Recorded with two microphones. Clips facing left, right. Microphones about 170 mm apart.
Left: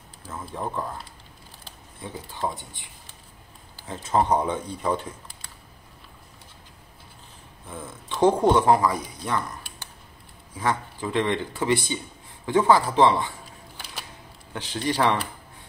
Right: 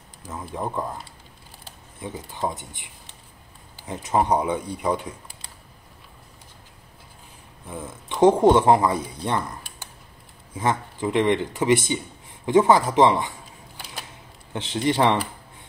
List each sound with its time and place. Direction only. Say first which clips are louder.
0.3 s speech: right 2 dB; 15° right (ahead or behind)
7.6 s speech: right 3 dB; 20° right (ahead or behind)
10.5 s speech: right 2 dB; 20° right (ahead or behind)
14.5 s speech: right 4 dB; 20° right (ahead or behind)